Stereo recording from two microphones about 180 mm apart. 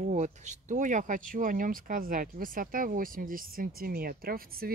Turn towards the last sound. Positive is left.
turn(degrees=-55)  # may be behind; listen again after turning